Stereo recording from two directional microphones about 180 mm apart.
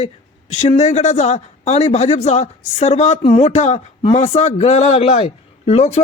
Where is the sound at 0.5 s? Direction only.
40° left (ahead or behind).